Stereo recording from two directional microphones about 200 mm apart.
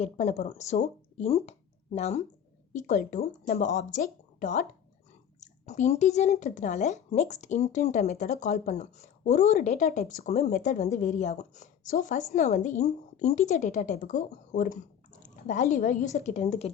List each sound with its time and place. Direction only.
0.0 s speech: 35° left (ahead or behind)